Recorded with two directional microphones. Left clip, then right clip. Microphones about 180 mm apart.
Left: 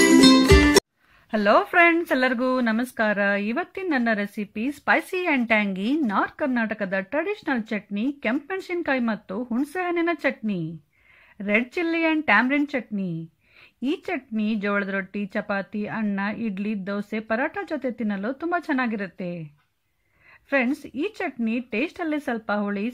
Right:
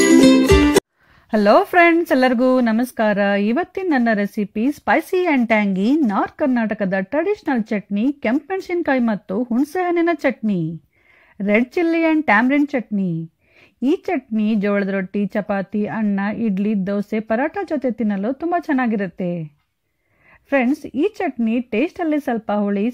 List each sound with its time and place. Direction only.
0.0 s music: centre (ahead or behind)
1.3 s speech: 40° right (ahead or behind)
20.4 s speech: 30° right (ahead or behind)